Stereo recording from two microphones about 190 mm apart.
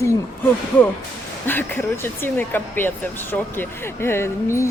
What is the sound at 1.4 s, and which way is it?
Speech, 10° left (ahead or behind).